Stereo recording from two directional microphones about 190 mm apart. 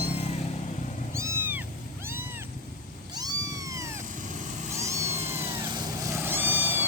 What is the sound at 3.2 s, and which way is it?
Cat, 20° right (ahead or behind).